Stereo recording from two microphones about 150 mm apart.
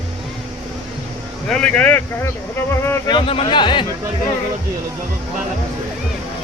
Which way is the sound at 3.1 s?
35° left (ahead or behind).